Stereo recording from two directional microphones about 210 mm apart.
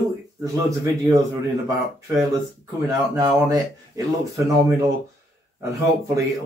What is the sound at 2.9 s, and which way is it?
Speech, 15° right (ahead or behind).